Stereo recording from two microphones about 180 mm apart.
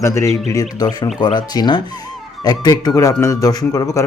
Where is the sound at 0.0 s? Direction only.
15° left (ahead or behind).